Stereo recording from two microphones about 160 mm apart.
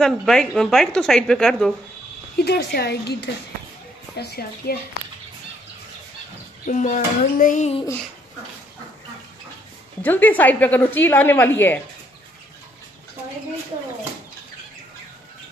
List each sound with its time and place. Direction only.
0.0 s a woman's voice: 5° left (ahead or behind)
2.3 s speech: 85° left
4.2 s a woman's voice: 75° left (ahead or behind)
6.6 s a child's voice: 50° left (ahead or behind)
10.0 s a woman's voice: 10° left (ahead or behind)